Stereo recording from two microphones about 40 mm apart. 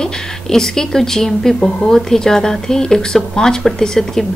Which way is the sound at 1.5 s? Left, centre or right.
Left.